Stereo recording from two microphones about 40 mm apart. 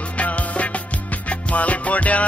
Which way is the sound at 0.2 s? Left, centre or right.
Left.